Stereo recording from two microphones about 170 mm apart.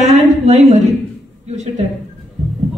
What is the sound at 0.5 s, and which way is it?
Speech, 40° right (ahead or behind).